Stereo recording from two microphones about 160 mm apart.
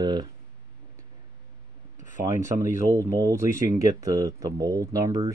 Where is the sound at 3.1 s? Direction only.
20° right (ahead or behind).